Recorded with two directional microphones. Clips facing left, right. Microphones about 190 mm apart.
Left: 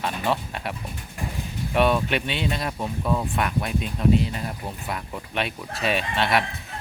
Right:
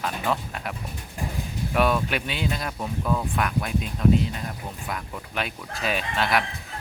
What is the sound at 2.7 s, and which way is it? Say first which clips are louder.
Speech: left 1 dB; 10° left (ahead or behind).